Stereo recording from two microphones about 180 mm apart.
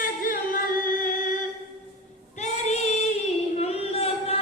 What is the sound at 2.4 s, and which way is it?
Female singing, 40° left (ahead or behind).